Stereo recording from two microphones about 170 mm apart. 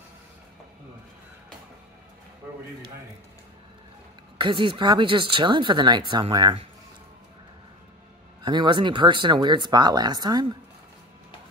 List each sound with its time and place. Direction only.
4.4 s speech: 30° right (ahead or behind)
8.4 s speech: 25° right (ahead or behind)